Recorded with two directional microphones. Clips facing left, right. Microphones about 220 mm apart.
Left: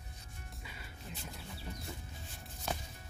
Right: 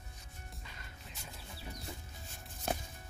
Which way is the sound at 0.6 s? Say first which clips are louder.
Left 2 dB; 5° left (ahead or behind).